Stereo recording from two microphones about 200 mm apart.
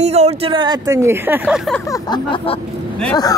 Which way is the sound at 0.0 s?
30° right (ahead or behind).